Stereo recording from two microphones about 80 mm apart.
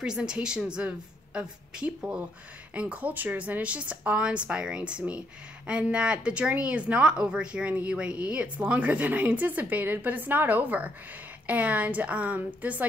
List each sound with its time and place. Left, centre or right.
0.0 s a woman's voice: centre